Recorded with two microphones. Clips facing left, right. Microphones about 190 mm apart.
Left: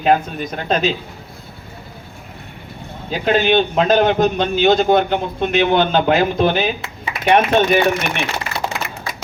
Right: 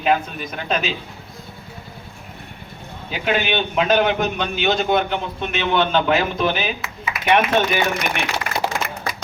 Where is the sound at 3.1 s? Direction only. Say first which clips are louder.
Left 6 dB; 40° left (ahead or behind).